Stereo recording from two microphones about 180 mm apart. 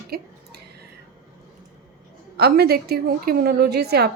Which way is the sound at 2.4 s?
60° right (ahead or behind).